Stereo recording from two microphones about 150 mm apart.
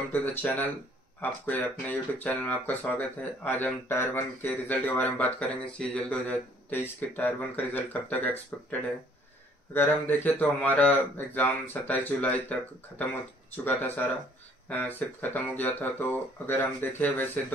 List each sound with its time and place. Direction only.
0.1 s speech: 10° left (ahead or behind)
9.8 s speech: 15° left (ahead or behind)
13.7 s speech: 10° left (ahead or behind)